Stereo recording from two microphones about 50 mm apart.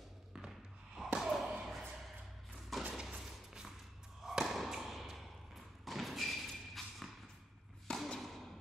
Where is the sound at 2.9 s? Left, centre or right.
Centre.